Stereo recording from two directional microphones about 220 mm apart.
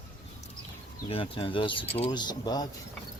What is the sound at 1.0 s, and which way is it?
Speech, 25° left (ahead or behind).